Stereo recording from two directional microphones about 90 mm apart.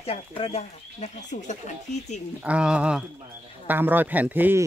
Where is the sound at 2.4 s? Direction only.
10° right (ahead or behind).